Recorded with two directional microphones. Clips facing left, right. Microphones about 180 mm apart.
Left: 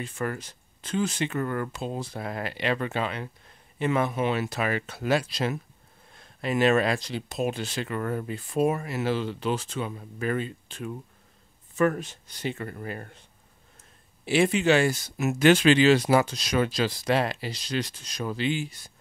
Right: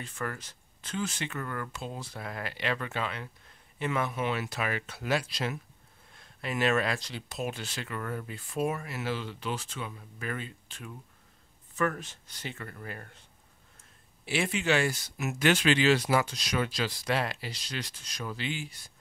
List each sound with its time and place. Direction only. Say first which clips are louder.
0.1 s speech: left 6 dB; 20° left (ahead or behind)
1.3 s speech: left 8 dB; 30° left (ahead or behind)
12.0 s speech: left 9 dB; 15° left (ahead or behind)
12.5 s speech: left 7 dB; 25° left (ahead or behind)
14.2 s speech: left 8 dB; 25° left (ahead or behind)
16.3 s speech: left 6 dB; 35° left (ahead or behind)